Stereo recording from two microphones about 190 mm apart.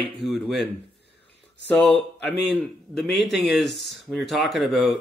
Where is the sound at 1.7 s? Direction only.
5° left (ahead or behind).